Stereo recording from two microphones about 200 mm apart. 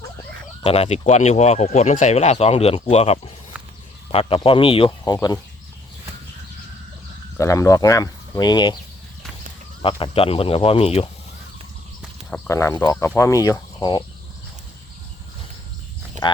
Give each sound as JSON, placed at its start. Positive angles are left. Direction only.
{"t": 0.6, "sound": "speech", "side_deg": 30}
{"t": 7.3, "sound": "speech", "side_deg": 15}
{"t": 9.8, "sound": "speech", "side_deg": 25}
{"t": 12.3, "sound": "speech", "side_deg": 15}
{"t": 16.2, "sound": "a sound", "side_deg": -40}